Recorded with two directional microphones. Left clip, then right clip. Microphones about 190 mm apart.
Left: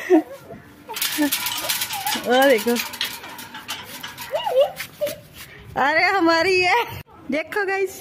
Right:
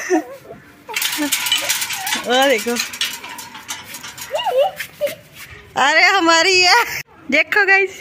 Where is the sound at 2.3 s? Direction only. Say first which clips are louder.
Right 1 dB; 15° left (ahead or behind).